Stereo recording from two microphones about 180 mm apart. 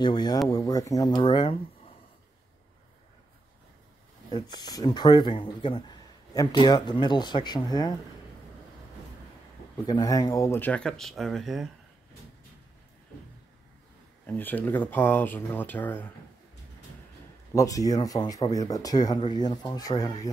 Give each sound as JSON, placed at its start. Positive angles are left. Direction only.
{"t": 0.0, "sound": "speech", "side_deg": 25}
{"t": 4.3, "sound": "speech", "side_deg": 25}
{"t": 9.8, "sound": "speech", "side_deg": 20}
{"t": 14.2, "sound": "speech", "side_deg": 10}
{"t": 17.6, "sound": "speech", "side_deg": 20}